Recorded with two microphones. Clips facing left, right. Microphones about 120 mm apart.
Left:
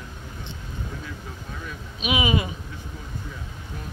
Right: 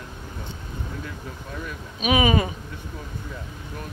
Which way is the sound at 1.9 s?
45° right (ahead or behind).